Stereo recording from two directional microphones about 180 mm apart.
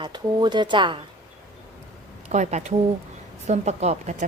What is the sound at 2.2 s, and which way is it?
Speech, 40° right (ahead or behind).